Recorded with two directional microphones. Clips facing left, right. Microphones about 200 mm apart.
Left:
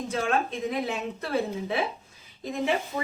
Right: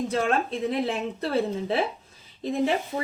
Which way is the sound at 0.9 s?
30° right (ahead or behind).